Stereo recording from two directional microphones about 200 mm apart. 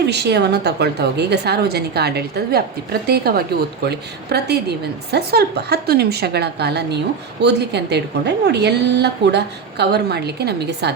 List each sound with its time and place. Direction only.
0.0 s a woman's voice: 55° right (ahead or behind)